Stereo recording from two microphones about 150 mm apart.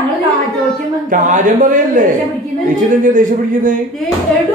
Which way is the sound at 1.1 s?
60° right (ahead or behind).